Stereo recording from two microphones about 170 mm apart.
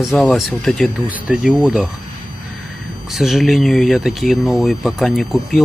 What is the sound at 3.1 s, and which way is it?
Speech, centre (ahead or behind).